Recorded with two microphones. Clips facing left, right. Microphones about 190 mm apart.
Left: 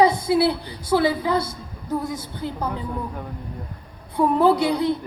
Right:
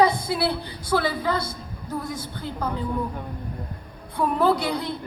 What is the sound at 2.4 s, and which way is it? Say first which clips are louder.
Speech: left 5 dB; 20° left (ahead or behind).